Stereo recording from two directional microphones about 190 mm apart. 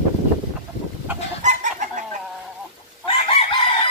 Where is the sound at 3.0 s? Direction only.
30° left (ahead or behind).